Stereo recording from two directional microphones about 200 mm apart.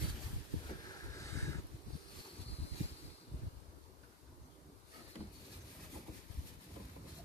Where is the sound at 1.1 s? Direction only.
15° left (ahead or behind).